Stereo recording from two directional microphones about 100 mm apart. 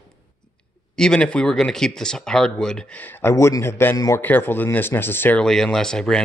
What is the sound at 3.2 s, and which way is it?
Speech, 30° left (ahead or behind).